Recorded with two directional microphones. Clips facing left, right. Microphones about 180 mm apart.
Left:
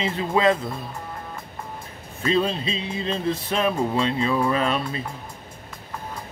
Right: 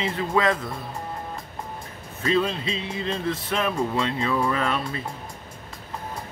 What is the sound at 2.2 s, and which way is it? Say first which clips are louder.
Speech: left 1 dB; 25° left (ahead or behind).